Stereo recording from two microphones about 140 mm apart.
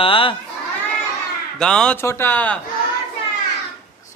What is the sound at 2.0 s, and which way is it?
Speech, 20° left (ahead or behind).